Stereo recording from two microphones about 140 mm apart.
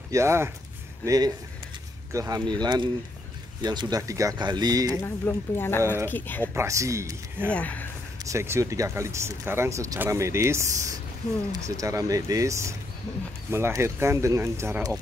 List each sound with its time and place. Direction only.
0.1 s speech: 20° right (ahead or behind)
5.0 s speech: 15° left (ahead or behind)
6.5 s speech: 20° right (ahead or behind)
7.5 s speech: 10° left (ahead or behind)
8.3 s speech: 20° right (ahead or behind)